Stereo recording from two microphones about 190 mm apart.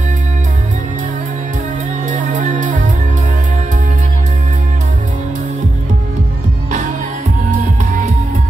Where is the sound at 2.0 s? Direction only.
40° right (ahead or behind).